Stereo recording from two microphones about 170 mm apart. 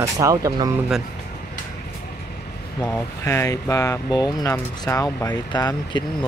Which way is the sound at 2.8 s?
15° left (ahead or behind).